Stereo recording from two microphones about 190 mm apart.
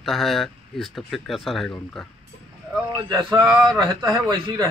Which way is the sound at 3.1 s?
20° right (ahead or behind).